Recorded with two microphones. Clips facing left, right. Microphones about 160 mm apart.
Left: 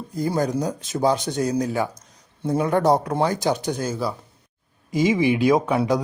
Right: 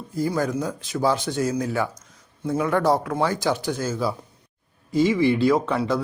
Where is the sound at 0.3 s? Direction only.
20° left (ahead or behind).